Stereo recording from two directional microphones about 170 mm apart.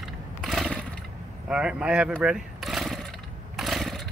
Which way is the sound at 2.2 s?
Centre (ahead or behind).